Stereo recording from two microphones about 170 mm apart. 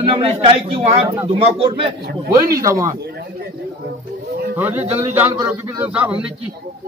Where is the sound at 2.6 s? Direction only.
20° right (ahead or behind).